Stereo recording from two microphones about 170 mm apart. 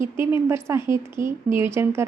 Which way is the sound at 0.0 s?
15° right (ahead or behind).